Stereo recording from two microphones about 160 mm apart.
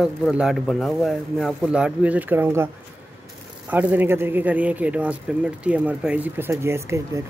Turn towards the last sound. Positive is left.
turn(degrees=-15)  # may be behind; listen again after turning